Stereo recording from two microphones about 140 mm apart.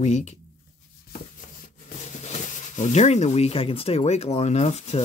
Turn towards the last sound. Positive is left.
turn(degrees=50)  # may be behind; listen again after turning